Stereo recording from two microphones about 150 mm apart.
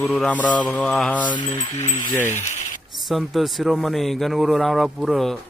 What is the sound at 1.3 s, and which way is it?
Wind chime, 30° left (ahead or behind).